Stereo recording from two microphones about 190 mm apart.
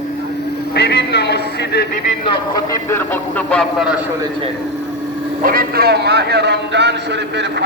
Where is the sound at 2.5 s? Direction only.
15° left (ahead or behind).